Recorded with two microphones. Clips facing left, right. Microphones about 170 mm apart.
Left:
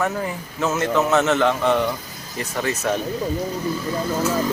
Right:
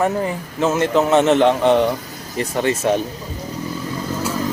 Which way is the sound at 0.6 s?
30° right (ahead or behind).